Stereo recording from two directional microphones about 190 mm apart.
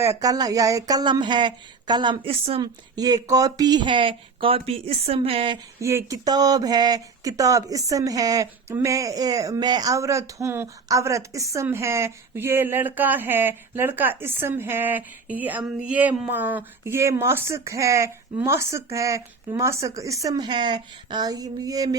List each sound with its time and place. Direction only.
0.0 s speech: 15° right (ahead or behind)
5.8 s speech: 15° right (ahead or behind)